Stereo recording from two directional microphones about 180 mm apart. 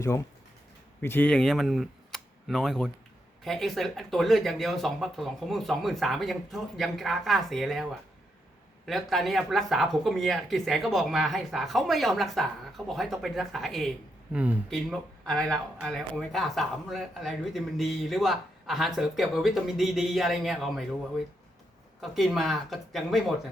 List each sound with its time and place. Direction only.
0.0 s speech: 15° left (ahead or behind); by 7.9 s centre (ahead or behind)
8.9 s speech: centre (ahead or behind)
14.7 s speech: centre (ahead or behind)
22.0 s speech: centre (ahead or behind)